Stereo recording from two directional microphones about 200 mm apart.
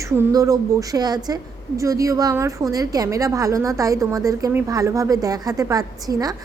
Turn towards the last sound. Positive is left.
turn(degrees=-20)  # may be behind; listen again after turning